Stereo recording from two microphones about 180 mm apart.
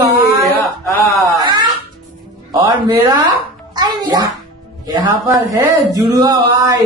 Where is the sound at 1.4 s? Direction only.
25° right (ahead or behind).